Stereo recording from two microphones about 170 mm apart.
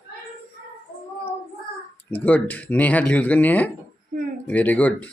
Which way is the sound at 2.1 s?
10° left (ahead or behind).